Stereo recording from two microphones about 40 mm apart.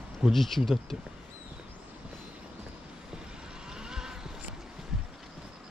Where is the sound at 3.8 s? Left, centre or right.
Centre.